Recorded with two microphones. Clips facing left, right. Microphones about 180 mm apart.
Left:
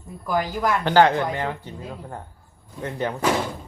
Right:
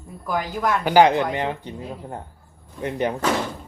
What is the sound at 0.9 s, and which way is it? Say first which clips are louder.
Speech: right 2 dB; 15° right (ahead or behind).